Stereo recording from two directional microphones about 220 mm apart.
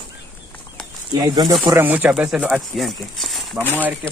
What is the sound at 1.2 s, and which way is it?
Speech, 20° right (ahead or behind).